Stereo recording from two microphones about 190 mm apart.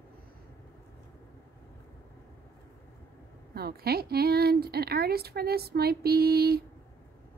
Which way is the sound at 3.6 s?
55° right (ahead or behind).